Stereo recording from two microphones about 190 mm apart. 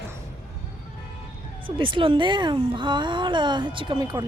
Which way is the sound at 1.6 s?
25° right (ahead or behind).